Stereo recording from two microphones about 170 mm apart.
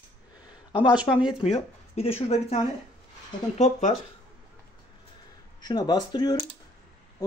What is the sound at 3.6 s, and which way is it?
Speech, 45° left (ahead or behind).